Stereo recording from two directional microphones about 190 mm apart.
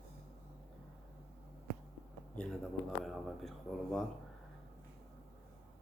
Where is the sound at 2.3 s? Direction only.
Centre (ahead or behind).